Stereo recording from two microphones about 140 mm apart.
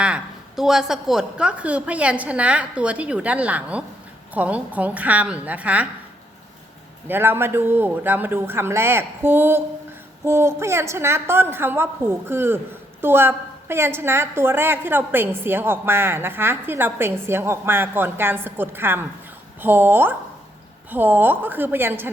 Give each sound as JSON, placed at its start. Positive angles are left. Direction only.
{"t": 0.0, "sound": "a woman's voice", "side_deg": -5}
{"t": 7.1, "sound": "a woman's voice", "side_deg": -15}